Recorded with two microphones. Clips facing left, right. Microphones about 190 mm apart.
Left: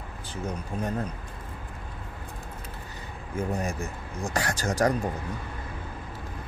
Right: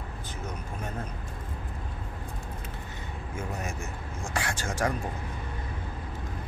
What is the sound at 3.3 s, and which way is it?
Speech, 35° left (ahead or behind).